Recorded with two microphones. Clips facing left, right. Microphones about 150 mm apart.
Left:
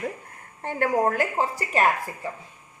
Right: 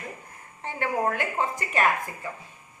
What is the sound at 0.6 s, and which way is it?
A woman's voice, 45° left (ahead or behind).